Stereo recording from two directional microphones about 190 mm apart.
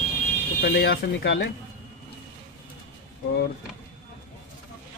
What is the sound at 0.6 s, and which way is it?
Speech, 65° left (ahead or behind).